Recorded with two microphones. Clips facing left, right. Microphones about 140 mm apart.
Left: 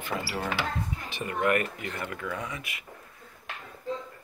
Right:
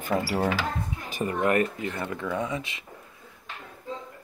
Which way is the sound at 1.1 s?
35° right (ahead or behind).